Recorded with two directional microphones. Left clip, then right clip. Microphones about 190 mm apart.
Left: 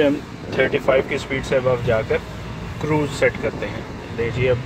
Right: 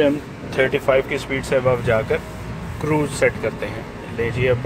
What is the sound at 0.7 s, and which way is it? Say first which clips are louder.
Speech: even; 5° right (ahead or behind).